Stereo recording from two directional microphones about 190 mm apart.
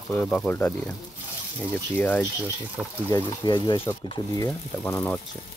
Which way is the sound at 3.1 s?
20° left (ahead or behind).